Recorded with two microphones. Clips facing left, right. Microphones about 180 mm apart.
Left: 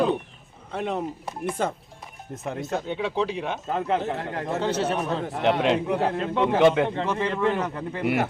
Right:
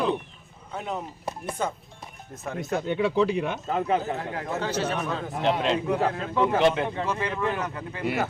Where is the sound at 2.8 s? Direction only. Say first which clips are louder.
Right 6 dB; 55° right (ahead or behind).